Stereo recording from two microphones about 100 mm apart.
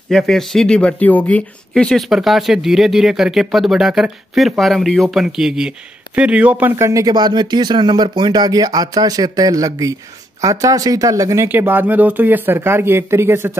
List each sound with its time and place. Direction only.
0.1 s speech: 5° left (ahead or behind)
1.7 s speech: 5° left (ahead or behind); by 6.7 s 15° right (ahead or behind)
6.7 s speech: 30° right (ahead or behind)
11.4 s speech: 20° right (ahead or behind)